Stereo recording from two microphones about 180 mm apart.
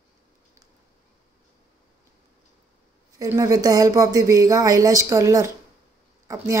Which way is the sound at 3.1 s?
20° right (ahead or behind).